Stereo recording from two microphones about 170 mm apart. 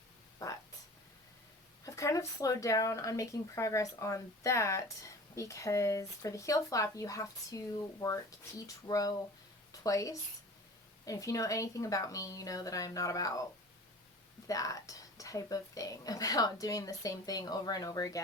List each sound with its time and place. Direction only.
0.3 s a sound: 20° left (ahead or behind)
1.8 s speech: 20° left (ahead or behind)
14.4 s speech: 20° left (ahead or behind)